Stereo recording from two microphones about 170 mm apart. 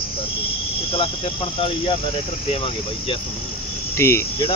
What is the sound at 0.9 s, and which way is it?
Cricket, 30° left (ahead or behind).